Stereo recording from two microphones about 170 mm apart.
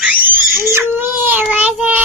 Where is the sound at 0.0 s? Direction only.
10° right (ahead or behind).